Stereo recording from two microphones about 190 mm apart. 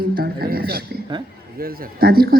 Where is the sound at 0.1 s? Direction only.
50° right (ahead or behind).